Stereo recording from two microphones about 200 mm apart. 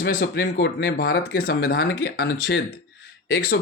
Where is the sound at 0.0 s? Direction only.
55° left (ahead or behind).